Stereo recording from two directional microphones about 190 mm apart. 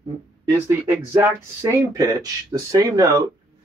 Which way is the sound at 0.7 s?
10° right (ahead or behind).